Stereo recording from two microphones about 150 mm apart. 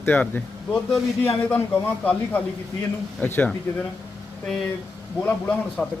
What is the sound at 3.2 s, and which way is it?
Speech, 10° left (ahead or behind).